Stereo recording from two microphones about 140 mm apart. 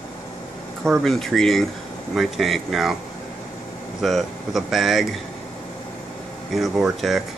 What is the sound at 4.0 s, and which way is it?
Speech, centre (ahead or behind).